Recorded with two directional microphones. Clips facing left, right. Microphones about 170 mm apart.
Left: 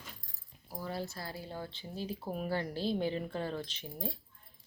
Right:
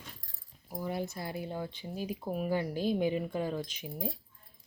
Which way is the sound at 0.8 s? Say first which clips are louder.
Right 4 dB; 15° right (ahead or behind).